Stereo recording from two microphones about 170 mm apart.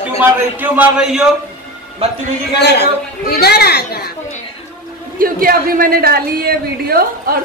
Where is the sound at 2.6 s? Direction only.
75° left (ahead or behind).